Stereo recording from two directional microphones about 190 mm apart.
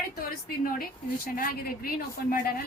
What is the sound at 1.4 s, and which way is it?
A woman's voice, 50° left (ahead or behind).